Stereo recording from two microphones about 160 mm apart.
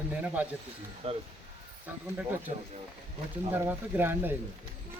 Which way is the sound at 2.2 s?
15° right (ahead or behind).